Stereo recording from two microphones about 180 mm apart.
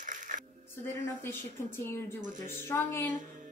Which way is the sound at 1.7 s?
15° left (ahead or behind).